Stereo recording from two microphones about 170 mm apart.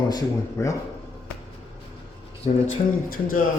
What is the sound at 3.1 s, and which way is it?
Speech, 55° left (ahead or behind).